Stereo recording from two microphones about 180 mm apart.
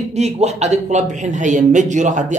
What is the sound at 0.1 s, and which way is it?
A man's voice, 35° right (ahead or behind).